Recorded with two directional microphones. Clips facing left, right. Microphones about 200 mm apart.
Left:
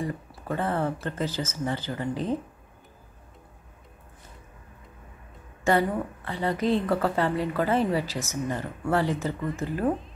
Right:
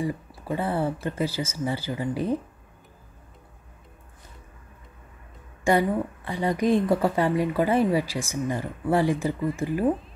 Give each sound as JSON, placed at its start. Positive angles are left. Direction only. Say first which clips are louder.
{"t": 0.5, "sound": "a woman's voice", "louder": "right 1 dB", "side_deg": -10}
{"t": 5.6, "sound": "a woman's voice", "louder": "right 2 dB", "side_deg": -15}